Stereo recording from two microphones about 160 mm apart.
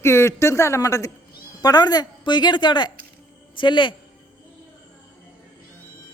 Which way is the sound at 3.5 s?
30° left (ahead or behind).